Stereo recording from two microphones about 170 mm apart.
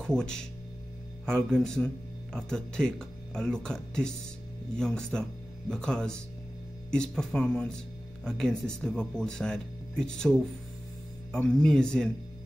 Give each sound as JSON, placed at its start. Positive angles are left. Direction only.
{"t": 0.0, "sound": "speech", "side_deg": 5}
{"t": 11.4, "sound": "speech", "side_deg": 5}